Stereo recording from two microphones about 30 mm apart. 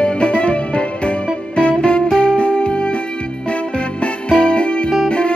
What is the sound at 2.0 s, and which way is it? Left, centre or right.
Music, left.